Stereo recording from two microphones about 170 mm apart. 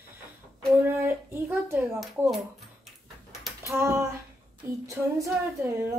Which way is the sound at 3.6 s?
15° right (ahead or behind).